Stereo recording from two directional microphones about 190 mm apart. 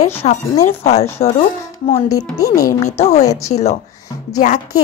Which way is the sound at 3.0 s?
35° left (ahead or behind).